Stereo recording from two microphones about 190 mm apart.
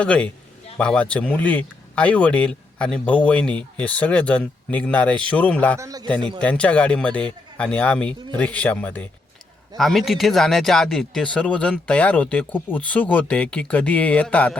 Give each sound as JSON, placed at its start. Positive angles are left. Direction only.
{"t": 0.0, "sound": "speech", "side_deg": 5}
{"t": 5.8, "sound": "a man's voice", "side_deg": -20}
{"t": 6.4, "sound": "speech", "side_deg": 5}